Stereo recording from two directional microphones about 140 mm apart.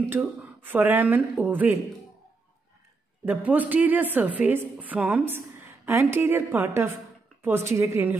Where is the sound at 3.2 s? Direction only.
10° right (ahead or behind).